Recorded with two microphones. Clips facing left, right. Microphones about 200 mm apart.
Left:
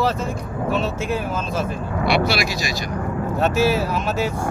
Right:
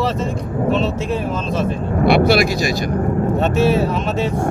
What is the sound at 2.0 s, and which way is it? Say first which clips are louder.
Speech: right 7 dB; 55° right (ahead or behind).